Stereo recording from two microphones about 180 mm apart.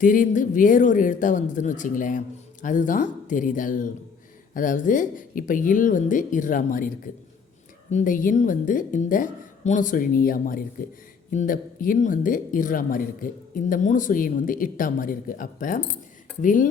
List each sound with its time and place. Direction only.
0.0 s speech: 45° left (ahead or behind)